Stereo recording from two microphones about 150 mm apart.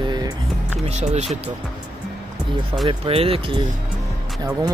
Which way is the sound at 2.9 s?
40° right (ahead or behind).